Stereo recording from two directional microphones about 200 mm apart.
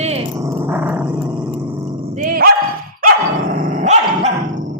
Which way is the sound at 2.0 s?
35° right (ahead or behind).